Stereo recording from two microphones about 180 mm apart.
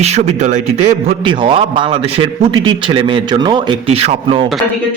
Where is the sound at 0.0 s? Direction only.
35° right (ahead or behind).